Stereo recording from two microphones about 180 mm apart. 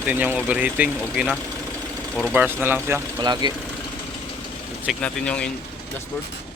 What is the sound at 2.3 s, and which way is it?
Speech, 10° right (ahead or behind).